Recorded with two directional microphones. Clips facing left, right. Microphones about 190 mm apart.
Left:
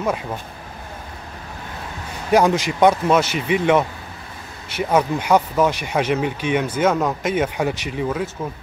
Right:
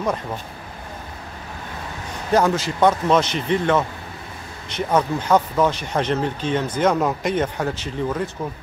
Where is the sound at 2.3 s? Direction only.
15° left (ahead or behind).